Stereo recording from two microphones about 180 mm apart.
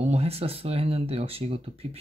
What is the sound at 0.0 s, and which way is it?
Speech, 35° right (ahead or behind).